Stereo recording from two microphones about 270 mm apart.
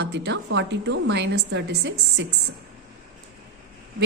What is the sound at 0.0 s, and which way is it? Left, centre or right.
A woman's voice, right.